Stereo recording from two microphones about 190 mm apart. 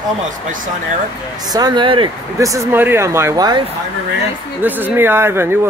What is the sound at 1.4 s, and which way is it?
Speech, 20° right (ahead or behind).